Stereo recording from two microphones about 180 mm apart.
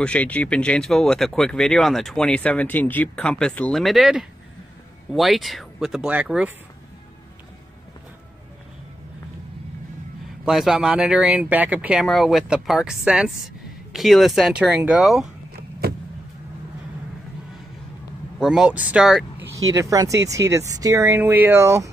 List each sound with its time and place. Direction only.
0.0 s speech: 5° left (ahead or behind)
10.4 s speech: 5° right (ahead or behind)
18.4 s speech: 5° right (ahead or behind)
19.7 s speech: 20° right (ahead or behind)